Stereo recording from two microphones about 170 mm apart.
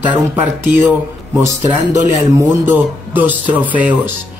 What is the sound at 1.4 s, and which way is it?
Speech, 15° right (ahead or behind).